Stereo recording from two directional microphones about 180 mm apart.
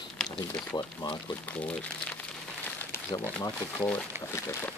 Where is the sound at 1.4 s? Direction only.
5° left (ahead or behind).